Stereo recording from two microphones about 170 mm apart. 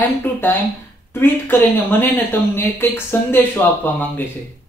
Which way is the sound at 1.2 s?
10° left (ahead or behind).